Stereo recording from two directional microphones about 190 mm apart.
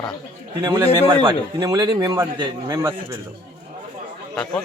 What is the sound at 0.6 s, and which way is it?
Speech, 15° right (ahead or behind).